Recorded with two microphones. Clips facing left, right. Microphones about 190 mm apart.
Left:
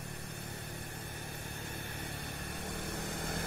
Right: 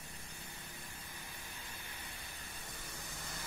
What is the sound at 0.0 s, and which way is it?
Mains hum, 65° left (ahead or behind).